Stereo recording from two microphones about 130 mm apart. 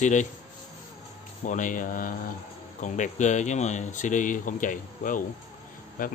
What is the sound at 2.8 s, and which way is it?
Speech, 70° left (ahead or behind).